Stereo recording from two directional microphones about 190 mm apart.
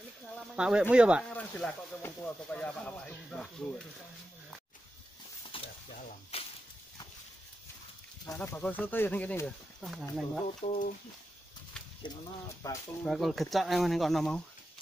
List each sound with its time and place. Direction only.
0.4 s speech: 5° right (ahead or behind)
1.3 s speech: 10° left (ahead or behind)
5.5 s mechanisms: 30° left (ahead or behind)
5.9 s a sound: 40° left (ahead or behind)
8.3 s speech: 10° left (ahead or behind)
10.6 s speech: 35° left (ahead or behind)
12.6 s speech: 20° left (ahead or behind)
13.0 s speech: centre (ahead or behind)